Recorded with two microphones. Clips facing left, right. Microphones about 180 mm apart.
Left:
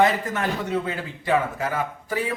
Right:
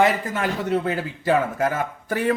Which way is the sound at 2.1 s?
60° right (ahead or behind).